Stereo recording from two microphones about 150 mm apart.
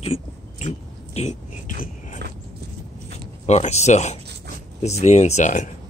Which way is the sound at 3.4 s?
45° left (ahead or behind).